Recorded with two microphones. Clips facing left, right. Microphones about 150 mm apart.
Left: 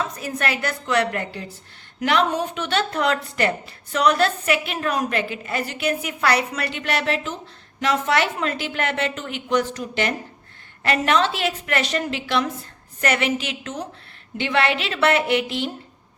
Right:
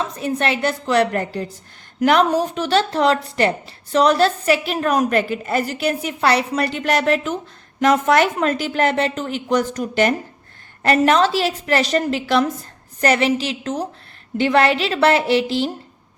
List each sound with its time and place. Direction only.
0.0 s a woman's voice: 30° right (ahead or behind)